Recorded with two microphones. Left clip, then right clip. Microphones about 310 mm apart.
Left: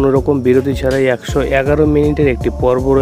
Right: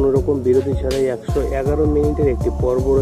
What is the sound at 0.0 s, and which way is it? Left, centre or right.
Speech, left.